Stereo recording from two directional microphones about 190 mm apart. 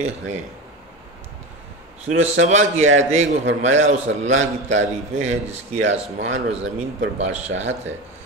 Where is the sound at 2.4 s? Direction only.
35° right (ahead or behind).